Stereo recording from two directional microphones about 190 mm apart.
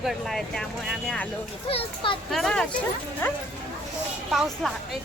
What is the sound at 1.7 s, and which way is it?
Speech, 30° left (ahead or behind).